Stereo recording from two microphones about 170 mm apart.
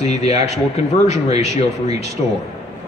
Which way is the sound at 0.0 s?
40° left (ahead or behind).